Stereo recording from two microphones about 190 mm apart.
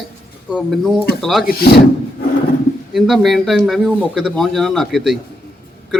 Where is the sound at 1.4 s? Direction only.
55° left (ahead or behind).